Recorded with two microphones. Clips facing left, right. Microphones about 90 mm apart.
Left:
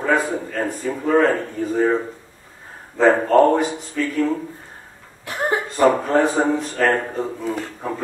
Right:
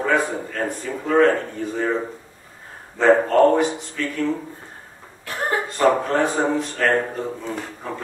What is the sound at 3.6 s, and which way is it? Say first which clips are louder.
Speech: even; centre (ahead or behind).